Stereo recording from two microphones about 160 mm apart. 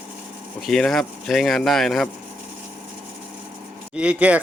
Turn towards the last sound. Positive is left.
turn(degrees=-10)  # may be behind; listen again after turning